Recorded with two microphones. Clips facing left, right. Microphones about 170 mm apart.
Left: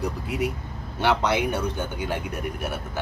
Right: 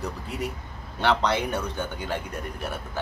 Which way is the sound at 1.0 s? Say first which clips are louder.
Left 1 dB; 10° left (ahead or behind).